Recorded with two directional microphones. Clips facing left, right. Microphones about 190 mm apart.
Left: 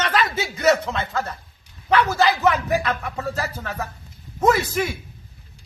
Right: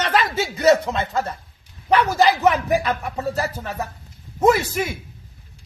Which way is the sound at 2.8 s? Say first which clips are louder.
Right 2 dB; 15° right (ahead or behind).